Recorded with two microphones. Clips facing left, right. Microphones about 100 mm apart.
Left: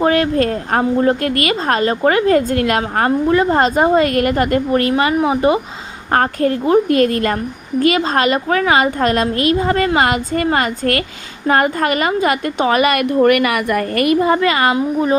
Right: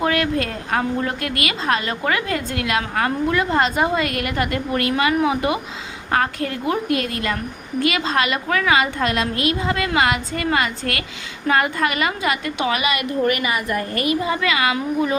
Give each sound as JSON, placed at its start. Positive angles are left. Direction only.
{"t": 0.0, "sound": "a woman's voice", "side_deg": 35}
{"t": 6.1, "sound": "a woman's voice", "side_deg": 40}